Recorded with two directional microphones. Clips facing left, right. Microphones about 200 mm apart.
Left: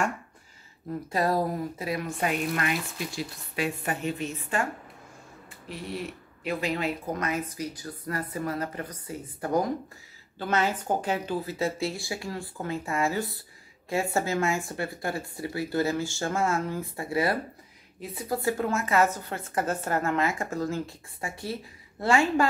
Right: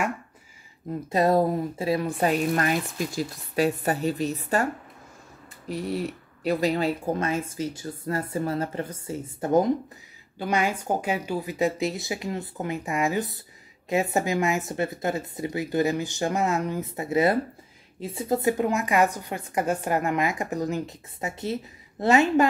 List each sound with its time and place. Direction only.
1.1 s speech: 25° right (ahead or behind); by 4.6 s 40° right (ahead or behind)
5.7 s speech: 40° right (ahead or behind)
10.4 s a woman's voice: 15° right (ahead or behind)